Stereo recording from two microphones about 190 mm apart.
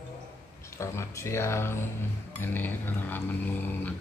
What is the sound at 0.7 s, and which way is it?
Speech, 15° left (ahead or behind).